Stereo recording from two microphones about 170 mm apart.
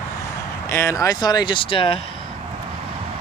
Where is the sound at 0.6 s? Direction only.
15° left (ahead or behind); by 1.9 s 30° left (ahead or behind).